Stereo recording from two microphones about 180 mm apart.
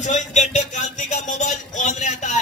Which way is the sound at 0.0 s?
40° left (ahead or behind).